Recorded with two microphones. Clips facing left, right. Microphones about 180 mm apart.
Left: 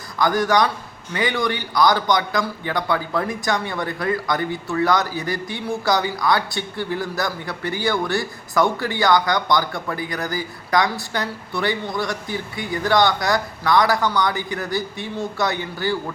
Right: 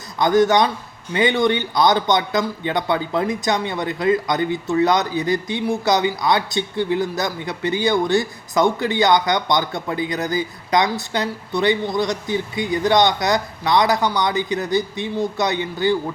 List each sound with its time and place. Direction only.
0.2 s a man's voice: 20° right (ahead or behind)